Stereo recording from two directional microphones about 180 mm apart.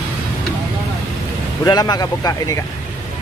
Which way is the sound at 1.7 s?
20° left (ahead or behind).